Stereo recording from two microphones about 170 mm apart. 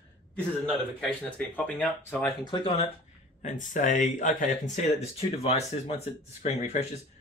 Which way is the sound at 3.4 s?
50° left (ahead or behind).